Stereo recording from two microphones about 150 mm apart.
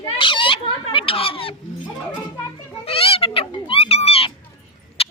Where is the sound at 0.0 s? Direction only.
35° left (ahead or behind).